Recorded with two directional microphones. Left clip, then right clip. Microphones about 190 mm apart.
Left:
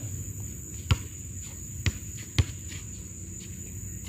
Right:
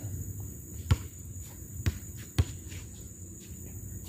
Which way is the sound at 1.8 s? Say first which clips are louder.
Left 6 dB; 5° right (ahead or behind).